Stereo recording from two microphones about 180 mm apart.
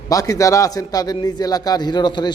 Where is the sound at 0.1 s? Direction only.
20° left (ahead or behind).